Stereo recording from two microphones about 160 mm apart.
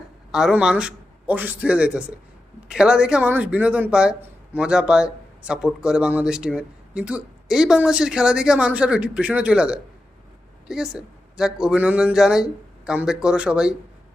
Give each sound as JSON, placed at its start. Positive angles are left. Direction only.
{"t": 0.3, "sound": "a man's voice", "side_deg": -5}